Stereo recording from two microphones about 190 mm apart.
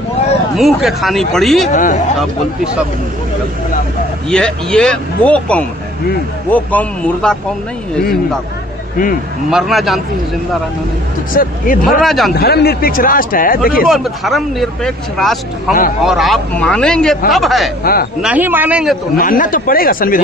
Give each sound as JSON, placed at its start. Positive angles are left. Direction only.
{"t": 0.6, "sound": "speech", "side_deg": 0}
{"t": 1.7, "sound": "a man's voice", "side_deg": 40}
{"t": 4.3, "sound": "a man's voice", "side_deg": 5}
{"t": 9.5, "sound": "speech", "side_deg": 0}
{"t": 11.3, "sound": "a man's voice", "side_deg": 45}
{"t": 12.0, "sound": "speech", "side_deg": 0}
{"t": 12.4, "sound": "a man's voice", "side_deg": 55}
{"t": 13.8, "sound": "speech", "side_deg": 0}
{"t": 19.1, "sound": "a man's voice", "side_deg": 45}